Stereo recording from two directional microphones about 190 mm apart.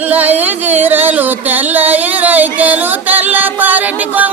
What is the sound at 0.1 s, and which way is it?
Music, 10° right (ahead or behind).